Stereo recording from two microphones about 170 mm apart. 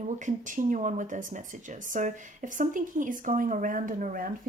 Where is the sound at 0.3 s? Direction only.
50° right (ahead or behind).